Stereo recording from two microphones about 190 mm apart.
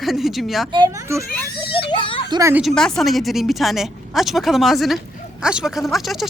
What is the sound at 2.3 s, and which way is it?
Speech, 15° right (ahead or behind).